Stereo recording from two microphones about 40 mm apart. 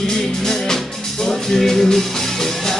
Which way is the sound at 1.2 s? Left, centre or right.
Centre.